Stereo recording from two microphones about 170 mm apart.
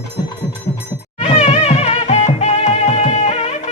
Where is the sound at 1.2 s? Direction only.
40° left (ahead or behind).